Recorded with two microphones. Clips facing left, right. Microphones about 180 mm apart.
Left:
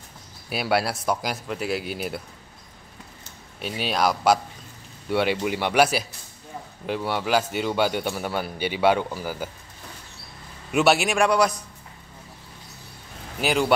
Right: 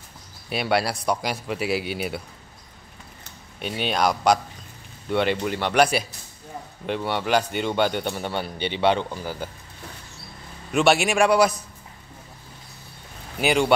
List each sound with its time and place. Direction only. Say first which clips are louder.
0.5 s a man's voice: right 1 dB; centre (ahead or behind)
3.5 s a man's voice: right 1 dB; centre (ahead or behind)
10.7 s a man's voice: right 1 dB; 5° left (ahead or behind)
13.4 s a man's voice: right 2 dB; centre (ahead or behind)